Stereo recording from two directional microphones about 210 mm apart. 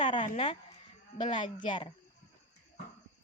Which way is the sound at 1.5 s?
20° left (ahead or behind).